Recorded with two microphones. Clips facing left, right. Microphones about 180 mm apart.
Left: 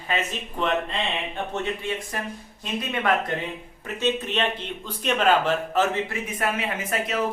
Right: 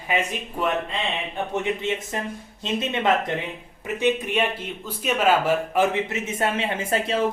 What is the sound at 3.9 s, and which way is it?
A man's voice, 15° right (ahead or behind).